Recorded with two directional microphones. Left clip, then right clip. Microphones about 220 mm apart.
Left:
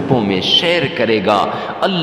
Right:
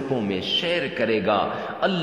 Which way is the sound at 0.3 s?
35° left (ahead or behind).